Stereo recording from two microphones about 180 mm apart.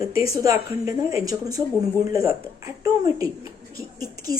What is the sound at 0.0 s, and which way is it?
A woman's voice, 20° right (ahead or behind).